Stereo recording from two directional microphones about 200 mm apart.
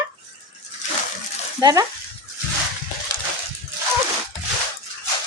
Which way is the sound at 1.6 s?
20° right (ahead or behind).